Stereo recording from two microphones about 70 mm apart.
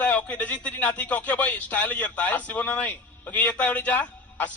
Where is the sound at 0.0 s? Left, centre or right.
Left.